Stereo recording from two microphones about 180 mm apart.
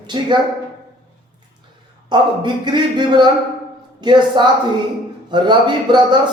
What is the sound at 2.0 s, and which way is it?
Speech, 25° right (ahead or behind).